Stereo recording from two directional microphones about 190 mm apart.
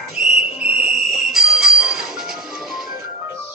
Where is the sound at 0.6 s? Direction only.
55° right (ahead or behind).